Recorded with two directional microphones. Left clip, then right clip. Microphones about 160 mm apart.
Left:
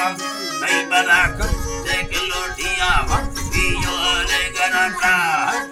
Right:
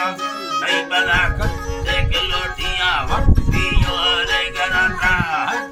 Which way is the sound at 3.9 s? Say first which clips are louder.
Right 3 dB; 35° right (ahead or behind).